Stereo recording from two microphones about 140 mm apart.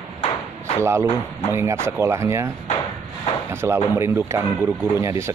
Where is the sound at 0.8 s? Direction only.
20° right (ahead or behind).